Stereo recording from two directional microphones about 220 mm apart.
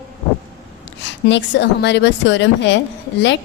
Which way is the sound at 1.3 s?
55° left (ahead or behind).